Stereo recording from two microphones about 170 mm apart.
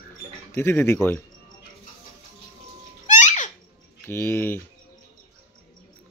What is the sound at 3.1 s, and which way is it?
Music, 45° left (ahead or behind).